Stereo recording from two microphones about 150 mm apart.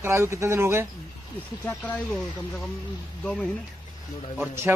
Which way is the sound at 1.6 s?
10° left (ahead or behind).